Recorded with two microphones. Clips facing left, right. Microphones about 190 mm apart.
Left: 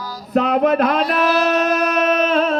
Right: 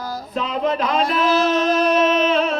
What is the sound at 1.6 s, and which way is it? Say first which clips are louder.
Music: right 1 dB; 60° left (ahead or behind).